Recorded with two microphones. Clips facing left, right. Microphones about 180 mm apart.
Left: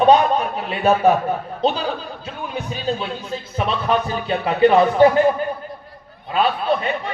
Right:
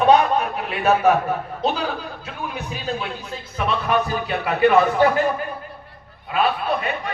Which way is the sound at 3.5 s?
30° left (ahead or behind).